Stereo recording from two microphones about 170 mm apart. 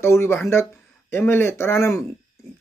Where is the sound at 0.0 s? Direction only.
15° left (ahead or behind).